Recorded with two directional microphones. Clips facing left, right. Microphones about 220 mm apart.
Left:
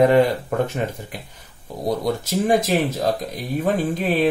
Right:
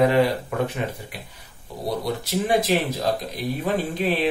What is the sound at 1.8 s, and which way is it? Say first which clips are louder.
Speech: left 4 dB; 45° left (ahead or behind).